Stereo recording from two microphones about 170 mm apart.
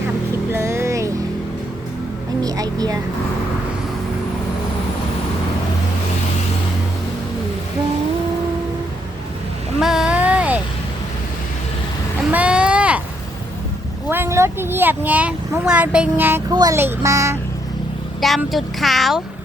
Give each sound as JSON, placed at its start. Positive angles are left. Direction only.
{"t": 0.5, "sound": "music", "side_deg": -15}
{"t": 2.4, "sound": "vehicle", "side_deg": -20}
{"t": 9.8, "sound": "a sound", "side_deg": -5}
{"t": 12.3, "sound": "a sound", "side_deg": -5}
{"t": 14.1, "sound": "vehicle", "side_deg": -15}
{"t": 16.5, "sound": "a child's voice", "side_deg": -20}
{"t": 18.2, "sound": "speech", "side_deg": 0}